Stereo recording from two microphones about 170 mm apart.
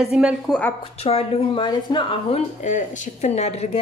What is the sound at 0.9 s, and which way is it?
A woman's voice, 35° left (ahead or behind).